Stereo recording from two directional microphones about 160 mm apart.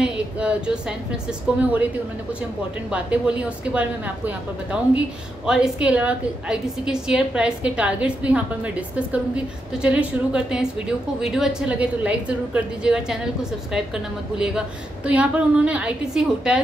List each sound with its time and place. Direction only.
0.0 s speech: 5° right (ahead or behind)
2.9 s speech: 10° right (ahead or behind)